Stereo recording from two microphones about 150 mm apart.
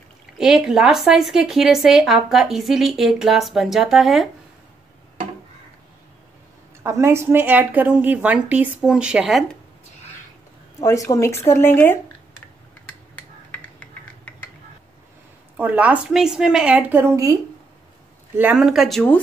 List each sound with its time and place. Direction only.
0.4 s speech: 5° right (ahead or behind)
6.8 s a woman's voice: 20° right (ahead or behind); by 9.6 s centre (ahead or behind)
10.8 s speech: 20° left (ahead or behind)
12.8 s a sound: 10° left (ahead or behind)
15.5 s a woman's voice: 10° right (ahead or behind)
17.0 s speech: 20° right (ahead or behind); by 19.2 s 5° left (ahead or behind)